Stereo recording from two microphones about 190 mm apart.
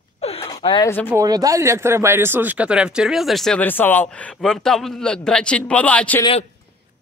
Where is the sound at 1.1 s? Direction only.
20° right (ahead or behind); by 6.2 s 10° left (ahead or behind).